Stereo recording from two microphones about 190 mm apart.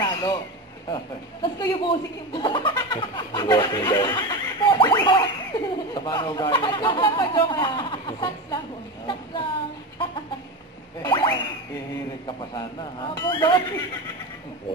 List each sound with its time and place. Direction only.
0.0 s a sound: 20° left (ahead or behind)
0.8 s speech: 25° left (ahead or behind)
11.0 s boing: 20° left (ahead or behind)
12.3 s speech: 25° left (ahead or behind)